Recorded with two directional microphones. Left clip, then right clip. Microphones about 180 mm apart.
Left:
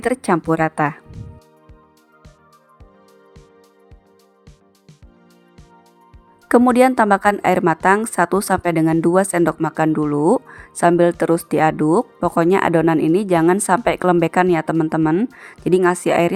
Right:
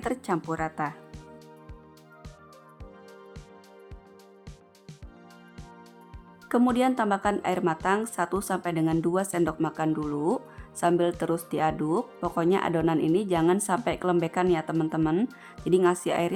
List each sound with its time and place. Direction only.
0.0 s speech: 40° left (ahead or behind)
6.7 s speech: 40° left (ahead or behind)